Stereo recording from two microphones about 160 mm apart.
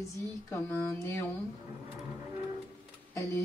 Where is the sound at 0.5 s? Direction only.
15° left (ahead or behind).